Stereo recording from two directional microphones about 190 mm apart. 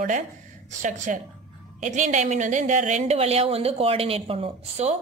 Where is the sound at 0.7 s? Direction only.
40° right (ahead or behind).